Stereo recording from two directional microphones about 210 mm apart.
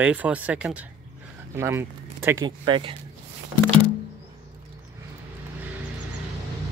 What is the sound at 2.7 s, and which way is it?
Speech, 25° right (ahead or behind).